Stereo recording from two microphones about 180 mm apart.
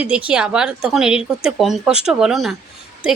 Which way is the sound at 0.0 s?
5° right (ahead or behind).